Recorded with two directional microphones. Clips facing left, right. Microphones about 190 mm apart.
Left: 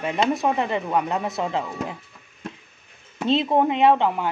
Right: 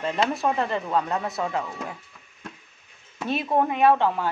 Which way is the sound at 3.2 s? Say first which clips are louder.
Left 4 dB; 20° left (ahead or behind).